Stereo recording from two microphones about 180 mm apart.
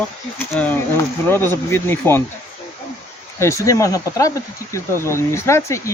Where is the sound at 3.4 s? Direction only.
15° left (ahead or behind).